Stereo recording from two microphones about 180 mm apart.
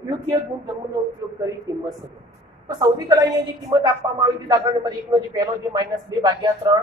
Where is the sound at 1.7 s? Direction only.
20° right (ahead or behind).